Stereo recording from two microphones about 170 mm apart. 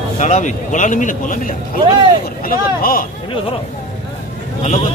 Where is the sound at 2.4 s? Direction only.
60° left (ahead or behind).